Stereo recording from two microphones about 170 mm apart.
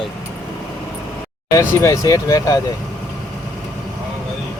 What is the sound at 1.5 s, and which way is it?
Speech, 20° left (ahead or behind).